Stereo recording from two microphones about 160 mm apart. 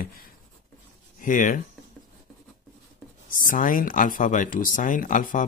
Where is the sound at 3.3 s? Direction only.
60° left (ahead or behind).